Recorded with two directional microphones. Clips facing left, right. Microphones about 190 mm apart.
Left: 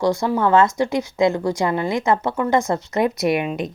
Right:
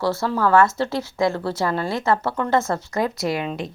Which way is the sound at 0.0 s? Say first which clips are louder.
Left 3 dB; 15° left (ahead or behind).